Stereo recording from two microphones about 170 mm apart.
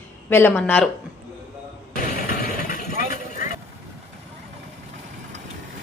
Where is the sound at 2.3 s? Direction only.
50° left (ahead or behind).